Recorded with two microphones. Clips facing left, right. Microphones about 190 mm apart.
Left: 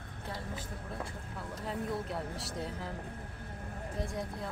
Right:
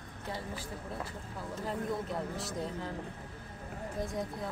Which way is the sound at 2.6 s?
Centre (ahead or behind).